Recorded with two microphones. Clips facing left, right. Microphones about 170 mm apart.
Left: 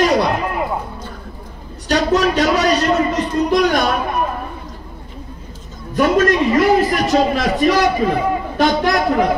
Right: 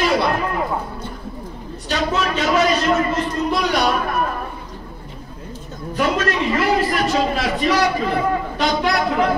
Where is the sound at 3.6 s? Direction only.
45° left (ahead or behind).